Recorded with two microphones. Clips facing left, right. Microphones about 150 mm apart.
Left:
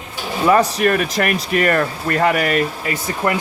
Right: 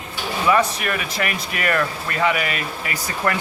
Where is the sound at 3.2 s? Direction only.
25° left (ahead or behind).